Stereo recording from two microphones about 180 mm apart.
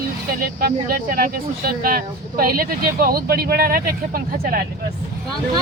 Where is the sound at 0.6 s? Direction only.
55° right (ahead or behind).